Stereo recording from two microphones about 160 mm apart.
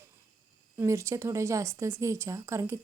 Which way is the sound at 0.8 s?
15° right (ahead or behind).